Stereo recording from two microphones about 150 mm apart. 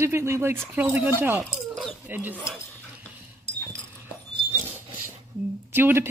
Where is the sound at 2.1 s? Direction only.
10° right (ahead or behind).